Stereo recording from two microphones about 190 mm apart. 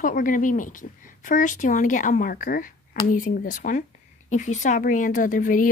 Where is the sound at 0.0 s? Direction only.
45° left (ahead or behind).